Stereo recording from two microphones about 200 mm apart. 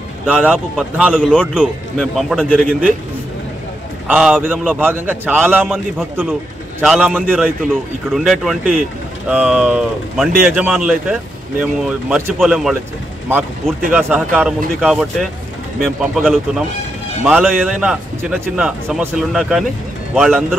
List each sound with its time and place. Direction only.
0.3 s a man's voice: centre (ahead or behind)
4.1 s a man's voice: 5° right (ahead or behind)